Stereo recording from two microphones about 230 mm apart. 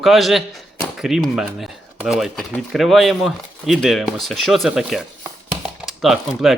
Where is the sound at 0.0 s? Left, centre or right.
Centre.